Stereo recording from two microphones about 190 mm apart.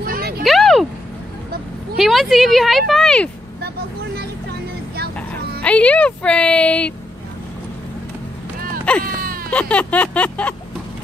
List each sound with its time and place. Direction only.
0.0 s a sound: 50° right (ahead or behind)
0.4 s a sound: centre (ahead or behind)
2.0 s speech: centre (ahead or behind)
5.6 s a woman's voice: 5° left (ahead or behind)
9.0 s whimper: 50° right (ahead or behind)
9.5 s a woman's voice: 5° left (ahead or behind)